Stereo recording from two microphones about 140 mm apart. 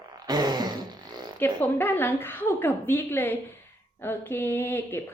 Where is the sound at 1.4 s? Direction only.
15° left (ahead or behind).